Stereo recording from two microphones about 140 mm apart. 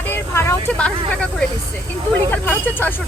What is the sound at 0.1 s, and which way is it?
Vehicle, 15° left (ahead or behind).